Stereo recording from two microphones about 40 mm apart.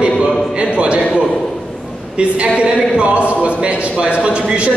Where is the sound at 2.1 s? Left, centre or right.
Right.